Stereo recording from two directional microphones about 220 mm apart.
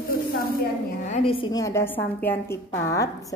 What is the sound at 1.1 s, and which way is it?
A woman's voice, 25° left (ahead or behind).